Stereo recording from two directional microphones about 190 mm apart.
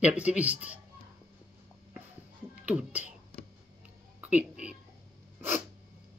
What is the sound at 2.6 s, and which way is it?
Speech, 5° right (ahead or behind).